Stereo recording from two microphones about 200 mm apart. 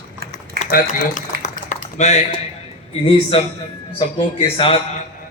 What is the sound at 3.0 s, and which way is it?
Speech, 25° left (ahead or behind).